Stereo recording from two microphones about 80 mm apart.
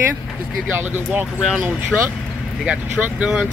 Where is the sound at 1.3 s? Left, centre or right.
Centre.